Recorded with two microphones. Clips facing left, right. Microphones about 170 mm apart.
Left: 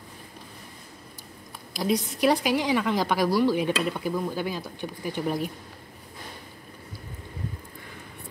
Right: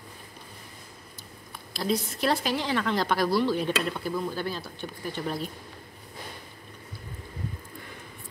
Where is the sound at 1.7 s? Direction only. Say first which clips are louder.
Left 2 dB; 15° left (ahead or behind).